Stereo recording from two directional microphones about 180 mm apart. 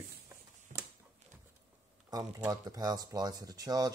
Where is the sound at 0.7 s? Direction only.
50° right (ahead or behind).